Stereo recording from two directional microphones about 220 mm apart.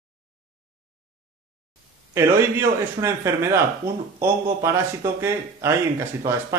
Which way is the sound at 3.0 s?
15° right (ahead or behind).